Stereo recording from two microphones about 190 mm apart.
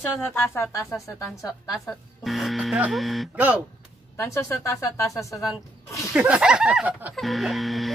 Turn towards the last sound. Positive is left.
turn(degrees=0)  # may be behind; listen again after turning